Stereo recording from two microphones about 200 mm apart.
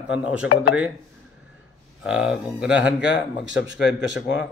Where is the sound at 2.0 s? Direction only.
5° right (ahead or behind).